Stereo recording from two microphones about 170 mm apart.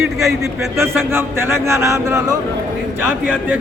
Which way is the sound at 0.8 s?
15° right (ahead or behind).